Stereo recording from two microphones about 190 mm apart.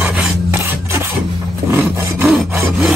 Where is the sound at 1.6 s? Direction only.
10° right (ahead or behind).